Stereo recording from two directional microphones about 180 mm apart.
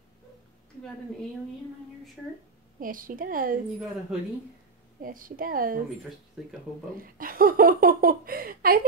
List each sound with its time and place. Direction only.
2.8 s a woman's voice: 50° right (ahead or behind)
5.0 s a woman's voice: 50° right (ahead or behind)
7.0 s speech: 50° right (ahead or behind)